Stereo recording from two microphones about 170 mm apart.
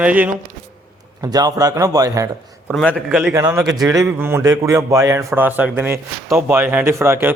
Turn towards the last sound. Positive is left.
turn(degrees=-15)  # may be behind; listen again after turning